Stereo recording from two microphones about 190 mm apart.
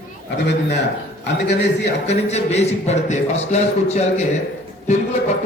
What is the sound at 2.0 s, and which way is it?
A man's voice, 35° left (ahead or behind).